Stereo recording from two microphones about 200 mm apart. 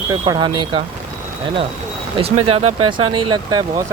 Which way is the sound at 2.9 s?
20° right (ahead or behind).